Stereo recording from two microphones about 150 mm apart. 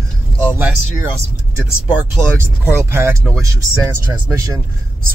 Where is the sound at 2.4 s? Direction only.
15° right (ahead or behind).